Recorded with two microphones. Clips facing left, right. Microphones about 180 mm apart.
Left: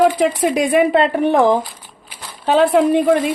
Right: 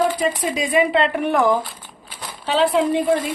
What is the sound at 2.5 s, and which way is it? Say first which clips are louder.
Speech: left 5 dB; 55° left (ahead or behind).